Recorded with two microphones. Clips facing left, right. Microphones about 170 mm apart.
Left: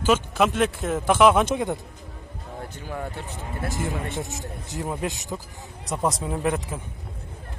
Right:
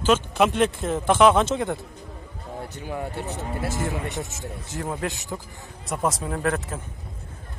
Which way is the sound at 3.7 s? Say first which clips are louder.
Left 1 dB; 15° left (ahead or behind).